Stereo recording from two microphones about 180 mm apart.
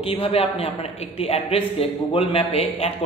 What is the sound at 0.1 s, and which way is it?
A man's voice, 30° left (ahead or behind).